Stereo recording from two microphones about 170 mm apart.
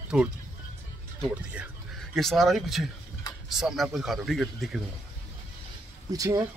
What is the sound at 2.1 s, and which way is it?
Speech, centre (ahead or behind).